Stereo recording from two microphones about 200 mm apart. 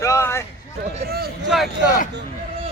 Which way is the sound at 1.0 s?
50° right (ahead or behind).